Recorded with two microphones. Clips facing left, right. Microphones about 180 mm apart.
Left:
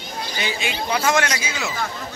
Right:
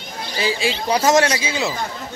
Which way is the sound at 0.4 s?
30° right (ahead or behind).